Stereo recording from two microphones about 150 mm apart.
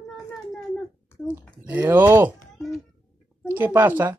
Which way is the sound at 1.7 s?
10° right (ahead or behind).